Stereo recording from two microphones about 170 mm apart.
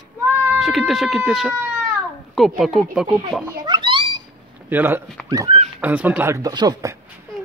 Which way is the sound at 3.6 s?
25° right (ahead or behind).